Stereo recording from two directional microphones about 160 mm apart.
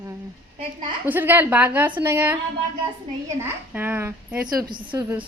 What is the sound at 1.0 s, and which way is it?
A woman's voice, 10° right (ahead or behind).